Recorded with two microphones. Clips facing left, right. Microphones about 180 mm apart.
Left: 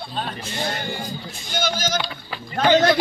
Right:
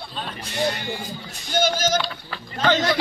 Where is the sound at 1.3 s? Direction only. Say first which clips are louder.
Right 5 dB; 45° right (ahead or behind).